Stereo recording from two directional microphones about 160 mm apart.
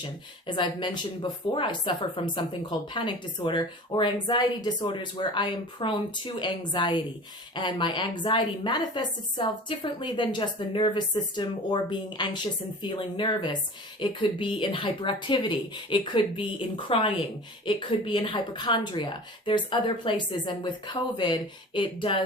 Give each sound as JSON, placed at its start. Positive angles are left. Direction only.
{"t": 0.4, "sound": "speech", "side_deg": 30}